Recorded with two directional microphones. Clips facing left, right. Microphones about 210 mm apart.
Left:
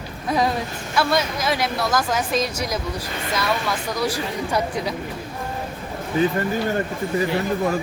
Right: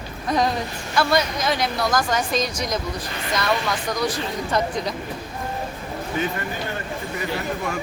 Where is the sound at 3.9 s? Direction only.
10° left (ahead or behind).